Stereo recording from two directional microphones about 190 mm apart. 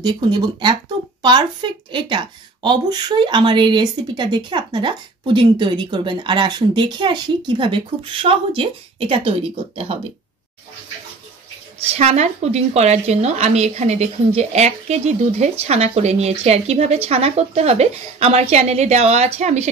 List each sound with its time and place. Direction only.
0.0 s a woman's voice: 20° right (ahead or behind)
11.8 s a woman's voice: 35° right (ahead or behind)